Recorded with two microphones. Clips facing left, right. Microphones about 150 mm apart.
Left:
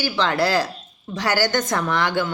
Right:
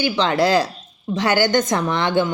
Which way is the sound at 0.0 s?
20° right (ahead or behind).